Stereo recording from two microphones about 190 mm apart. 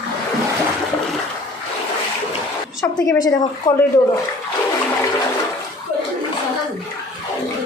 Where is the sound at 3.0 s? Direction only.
15° left (ahead or behind).